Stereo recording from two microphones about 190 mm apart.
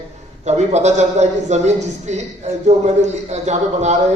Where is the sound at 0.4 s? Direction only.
35° right (ahead or behind).